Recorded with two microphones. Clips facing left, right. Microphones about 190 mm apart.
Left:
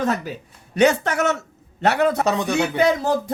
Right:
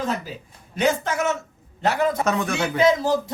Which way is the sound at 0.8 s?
70° left (ahead or behind).